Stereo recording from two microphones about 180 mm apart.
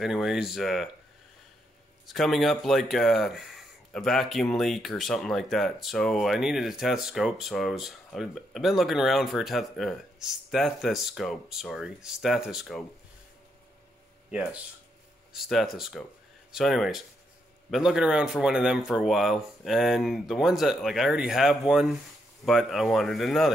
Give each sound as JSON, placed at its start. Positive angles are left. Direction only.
{"t": 0.0, "sound": "speech", "side_deg": 0}
{"t": 2.0, "sound": "speech", "side_deg": 0}
{"t": 14.3, "sound": "speech", "side_deg": -5}